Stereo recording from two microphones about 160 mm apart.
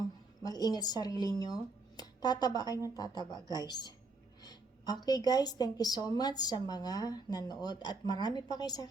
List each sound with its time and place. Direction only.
0.4 s a woman's voice: 25° left (ahead or behind)
5.0 s a woman's voice: 25° left (ahead or behind)